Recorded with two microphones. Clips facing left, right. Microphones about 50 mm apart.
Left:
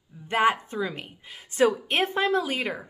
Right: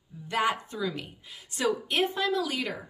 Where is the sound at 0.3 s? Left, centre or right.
Left.